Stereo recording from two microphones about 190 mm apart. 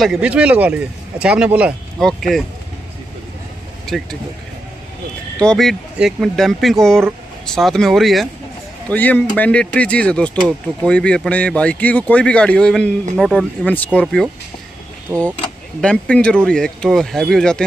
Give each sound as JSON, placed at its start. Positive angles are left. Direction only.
{"t": 0.0, "sound": "speech", "side_deg": -5}
{"t": 3.8, "sound": "speech", "side_deg": 0}
{"t": 5.4, "sound": "speech", "side_deg": 5}
{"t": 15.1, "sound": "speech", "side_deg": -15}
{"t": 15.8, "sound": "speech", "side_deg": 5}